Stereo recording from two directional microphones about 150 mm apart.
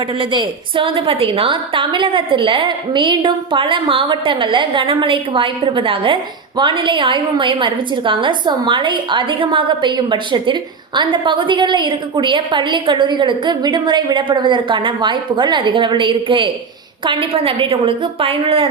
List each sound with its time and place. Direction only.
0.2 s a woman's voice: 35° right (ahead or behind)